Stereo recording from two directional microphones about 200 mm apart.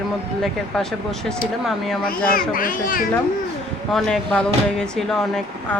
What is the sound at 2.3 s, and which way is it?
Speech, 45° left (ahead or behind).